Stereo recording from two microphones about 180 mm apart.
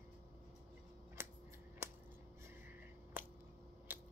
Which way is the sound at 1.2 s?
10° right (ahead or behind).